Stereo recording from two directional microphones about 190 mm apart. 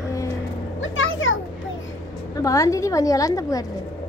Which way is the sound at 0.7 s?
90° left.